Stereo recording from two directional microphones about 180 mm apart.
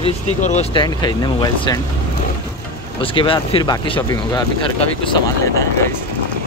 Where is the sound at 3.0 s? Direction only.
30° left (ahead or behind).